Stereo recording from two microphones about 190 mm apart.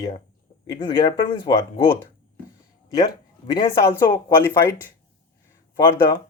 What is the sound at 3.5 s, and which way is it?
Speech, 25° left (ahead or behind).